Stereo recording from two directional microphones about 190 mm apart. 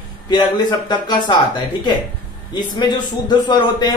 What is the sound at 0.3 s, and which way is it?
A man's voice, 25° left (ahead or behind).